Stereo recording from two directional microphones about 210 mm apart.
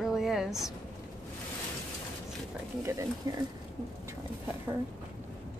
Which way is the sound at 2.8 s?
15° right (ahead or behind).